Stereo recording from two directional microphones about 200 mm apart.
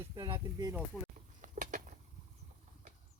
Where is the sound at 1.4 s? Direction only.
40° right (ahead or behind).